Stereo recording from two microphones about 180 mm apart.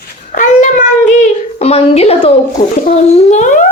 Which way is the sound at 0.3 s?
45° left (ahead or behind).